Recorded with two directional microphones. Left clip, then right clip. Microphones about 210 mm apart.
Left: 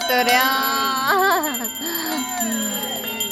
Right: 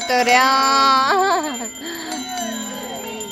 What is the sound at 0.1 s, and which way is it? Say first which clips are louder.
Music: right 3 dB; 10° right (ahead or behind).